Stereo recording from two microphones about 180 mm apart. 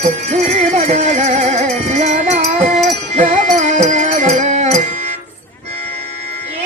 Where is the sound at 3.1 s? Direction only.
40° right (ahead or behind).